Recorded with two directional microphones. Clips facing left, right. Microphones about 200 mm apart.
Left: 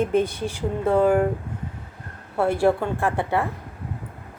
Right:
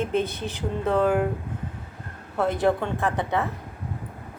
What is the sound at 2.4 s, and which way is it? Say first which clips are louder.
Speech: left 3 dB; 10° left (ahead or behind).